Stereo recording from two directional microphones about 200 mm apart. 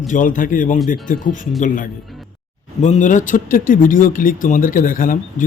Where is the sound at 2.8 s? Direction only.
35° left (ahead or behind).